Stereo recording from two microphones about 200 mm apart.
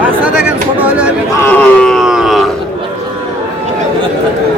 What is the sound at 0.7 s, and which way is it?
Speech, 5° right (ahead or behind).